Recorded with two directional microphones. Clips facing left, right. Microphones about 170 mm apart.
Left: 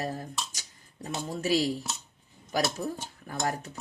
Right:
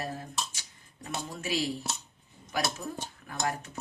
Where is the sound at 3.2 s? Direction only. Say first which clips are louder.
Left 2 dB; 40° left (ahead or behind).